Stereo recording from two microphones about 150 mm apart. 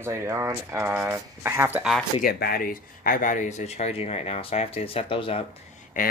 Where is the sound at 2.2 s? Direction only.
85° left; by 5.4 s 40° left (ahead or behind).